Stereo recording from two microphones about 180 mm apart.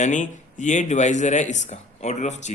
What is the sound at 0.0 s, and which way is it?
Speech, 45° left (ahead or behind).